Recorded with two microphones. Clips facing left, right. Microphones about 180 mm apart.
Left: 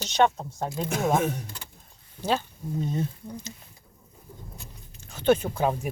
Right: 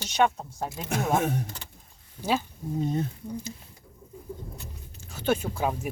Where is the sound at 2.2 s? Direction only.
10° right (ahead or behind).